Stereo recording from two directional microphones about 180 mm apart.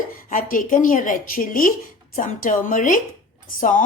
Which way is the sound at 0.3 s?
50° left (ahead or behind).